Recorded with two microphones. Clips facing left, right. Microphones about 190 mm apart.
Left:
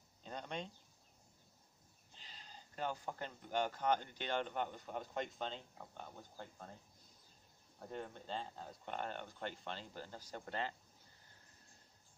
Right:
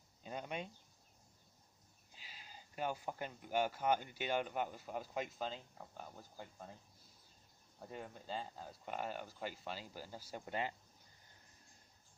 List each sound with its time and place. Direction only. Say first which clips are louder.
0.2 s a sound: right 1 dB; 10° right (ahead or behind)
2.1 s speech: even; 10° right (ahead or behind)
7.9 s speech: left 1 dB; 5° right (ahead or behind)